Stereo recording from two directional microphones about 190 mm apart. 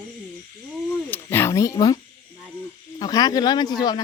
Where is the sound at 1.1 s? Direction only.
10° left (ahead or behind).